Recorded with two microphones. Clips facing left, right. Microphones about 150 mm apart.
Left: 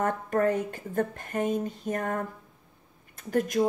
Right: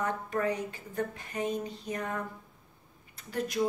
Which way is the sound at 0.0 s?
50° left (ahead or behind).